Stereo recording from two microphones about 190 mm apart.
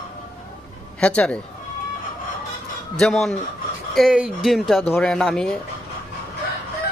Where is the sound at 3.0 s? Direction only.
Centre (ahead or behind).